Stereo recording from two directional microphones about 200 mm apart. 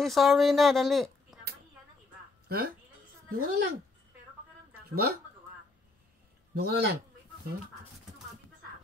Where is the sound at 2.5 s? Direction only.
50° right (ahead or behind).